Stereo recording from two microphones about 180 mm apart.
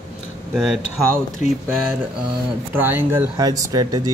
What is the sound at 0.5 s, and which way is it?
Speech, centre (ahead or behind).